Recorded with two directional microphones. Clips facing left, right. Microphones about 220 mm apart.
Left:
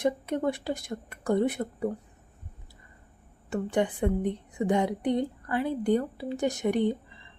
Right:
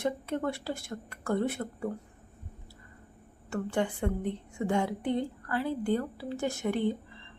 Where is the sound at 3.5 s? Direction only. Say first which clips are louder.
Left 3 dB; 15° left (ahead or behind).